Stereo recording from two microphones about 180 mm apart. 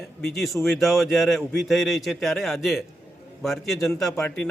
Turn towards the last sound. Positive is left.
turn(degrees=5)  # may be behind; listen again after turning